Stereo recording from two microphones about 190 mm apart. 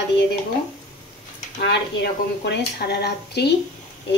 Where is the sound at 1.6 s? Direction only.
65° left (ahead or behind).